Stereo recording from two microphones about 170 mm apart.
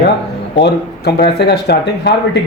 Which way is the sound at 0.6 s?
75° left (ahead or behind).